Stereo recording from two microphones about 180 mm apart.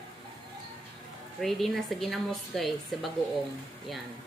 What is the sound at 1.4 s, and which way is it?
Speech, centre (ahead or behind).